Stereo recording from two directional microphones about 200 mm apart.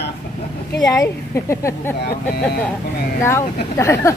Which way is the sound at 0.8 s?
15° left (ahead or behind).